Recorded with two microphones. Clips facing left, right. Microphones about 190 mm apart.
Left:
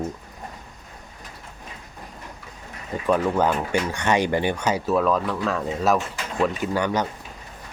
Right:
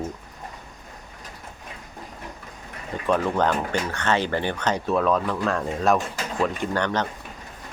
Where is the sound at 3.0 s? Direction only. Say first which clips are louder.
Left 1 dB; 5° left (ahead or behind).